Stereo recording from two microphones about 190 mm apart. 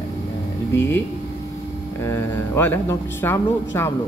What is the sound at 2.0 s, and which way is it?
A man's voice, 15° left (ahead or behind).